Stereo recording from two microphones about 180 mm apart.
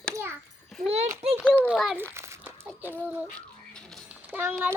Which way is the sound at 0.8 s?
35° right (ahead or behind).